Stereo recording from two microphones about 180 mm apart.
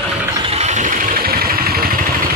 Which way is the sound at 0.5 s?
40° right (ahead or behind).